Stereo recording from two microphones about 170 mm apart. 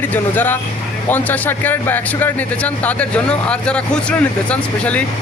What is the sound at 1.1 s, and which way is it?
Speech, 10° left (ahead or behind).